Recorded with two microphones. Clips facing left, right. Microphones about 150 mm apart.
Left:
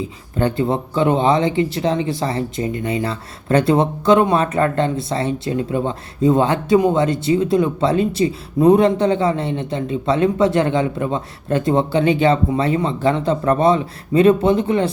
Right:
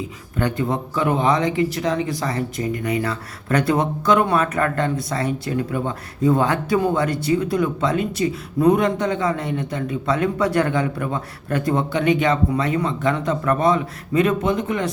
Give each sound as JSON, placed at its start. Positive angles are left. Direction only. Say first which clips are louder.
{"t": 0.3, "sound": "speech", "louder": "left 4 dB", "side_deg": 30}